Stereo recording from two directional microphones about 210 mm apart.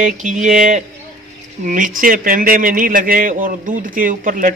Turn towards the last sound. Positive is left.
turn(degrees=-40)  # may be behind; listen again after turning